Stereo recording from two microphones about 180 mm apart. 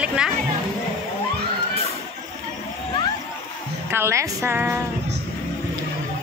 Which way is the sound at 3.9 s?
15° right (ahead or behind).